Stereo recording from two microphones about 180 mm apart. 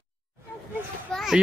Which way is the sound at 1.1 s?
Centre (ahead or behind).